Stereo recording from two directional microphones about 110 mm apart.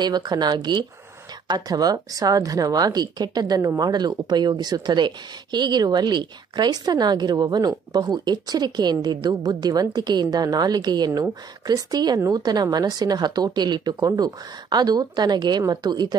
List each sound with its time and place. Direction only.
0.0 s a woman's voice: 40° right (ahead or behind)